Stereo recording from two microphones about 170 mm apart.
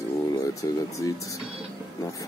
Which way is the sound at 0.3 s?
20° left (ahead or behind).